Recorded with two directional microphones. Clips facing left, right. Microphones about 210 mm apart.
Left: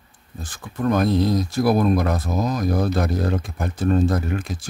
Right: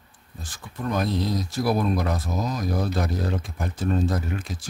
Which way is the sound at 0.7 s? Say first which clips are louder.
Left 7 dB; 55° left (ahead or behind).